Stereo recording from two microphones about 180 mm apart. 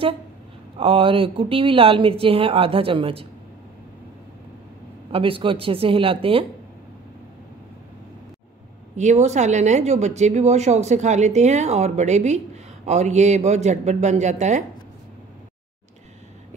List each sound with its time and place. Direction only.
0.7 s speech: 30° right (ahead or behind)
5.1 s speech: 30° right (ahead or behind)
8.9 s speech: 40° right (ahead or behind)